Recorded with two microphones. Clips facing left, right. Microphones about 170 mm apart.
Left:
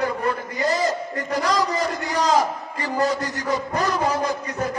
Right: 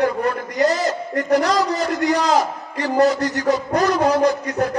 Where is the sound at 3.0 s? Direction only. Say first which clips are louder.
Right 7 dB; 75° right (ahead or behind).